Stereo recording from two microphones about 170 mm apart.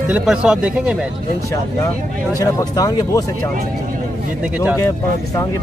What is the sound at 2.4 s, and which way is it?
Speech, 20° left (ahead or behind).